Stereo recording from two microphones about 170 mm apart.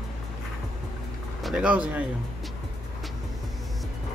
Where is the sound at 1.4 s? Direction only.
5° right (ahead or behind).